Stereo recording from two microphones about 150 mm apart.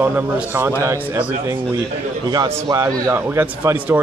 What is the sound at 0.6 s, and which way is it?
A man's voice, 20° right (ahead or behind).